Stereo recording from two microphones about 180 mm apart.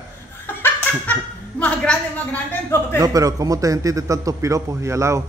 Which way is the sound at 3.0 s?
20° right (ahead or behind).